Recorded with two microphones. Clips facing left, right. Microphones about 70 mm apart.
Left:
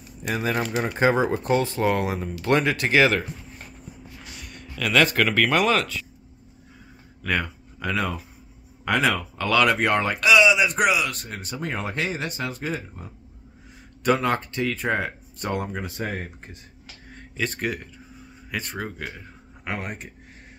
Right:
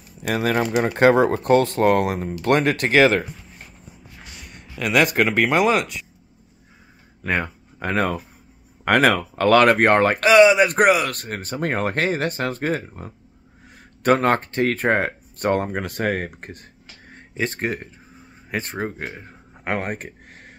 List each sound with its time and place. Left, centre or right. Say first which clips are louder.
0.3 s speech: right 5 dB; right
4.6 s a man's voice: right 2 dB; centre
7.2 s speech: right 2 dB; right
15.8 s speech: right 7 dB; right
17.1 s speech: right 3 dB; right